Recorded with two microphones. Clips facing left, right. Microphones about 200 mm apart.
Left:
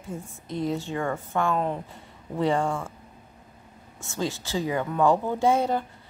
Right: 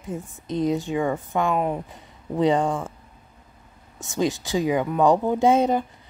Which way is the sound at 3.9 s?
15° right (ahead or behind).